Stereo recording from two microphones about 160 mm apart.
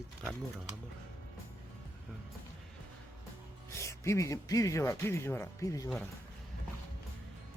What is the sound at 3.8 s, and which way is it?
A man's voice, 20° left (ahead or behind).